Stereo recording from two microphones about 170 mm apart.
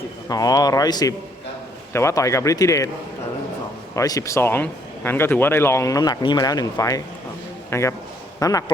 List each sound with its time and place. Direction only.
0.3 s a man's voice: 20° left (ahead or behind)
3.9 s a man's voice: 20° left (ahead or behind)